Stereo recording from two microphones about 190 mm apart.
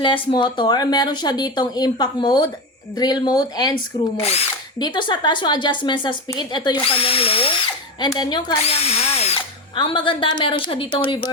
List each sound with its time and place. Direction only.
0.0 s speech: 25° left (ahead or behind)
4.2 s speech: 30° left (ahead or behind)